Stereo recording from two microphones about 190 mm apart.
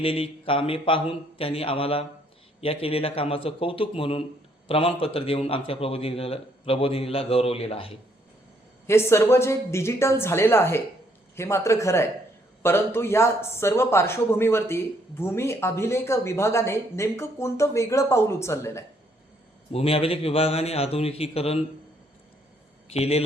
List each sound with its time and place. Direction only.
0.0 s a man's voice: 30° left (ahead or behind)
8.9 s speech: 15° left (ahead or behind)
19.7 s a man's voice: 30° left (ahead or behind)
22.9 s a man's voice: 30° left (ahead or behind)